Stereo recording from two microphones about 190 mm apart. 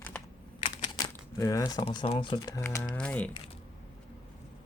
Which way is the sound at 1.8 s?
30° left (ahead or behind).